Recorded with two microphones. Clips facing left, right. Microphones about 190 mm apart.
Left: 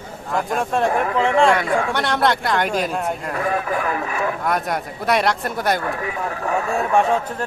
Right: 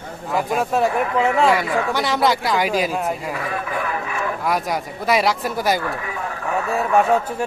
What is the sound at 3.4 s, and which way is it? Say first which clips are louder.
Speech: left 4 dB; 45° left (ahead or behind).